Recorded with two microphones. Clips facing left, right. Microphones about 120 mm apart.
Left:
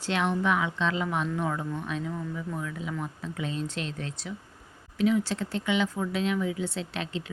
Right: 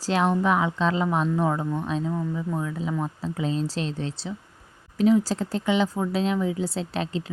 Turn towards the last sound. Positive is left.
turn(degrees=-35)  # may be behind; listen again after turning